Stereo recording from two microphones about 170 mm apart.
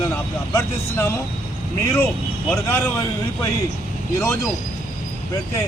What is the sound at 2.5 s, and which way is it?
Speech, 15° left (ahead or behind).